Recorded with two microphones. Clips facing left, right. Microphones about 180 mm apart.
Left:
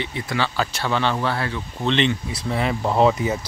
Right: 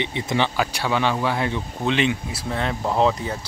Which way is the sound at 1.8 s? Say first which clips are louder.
Left 1 dB; 10° right (ahead or behind).